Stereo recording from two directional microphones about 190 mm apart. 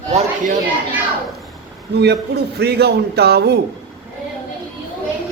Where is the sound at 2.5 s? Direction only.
60° right (ahead or behind).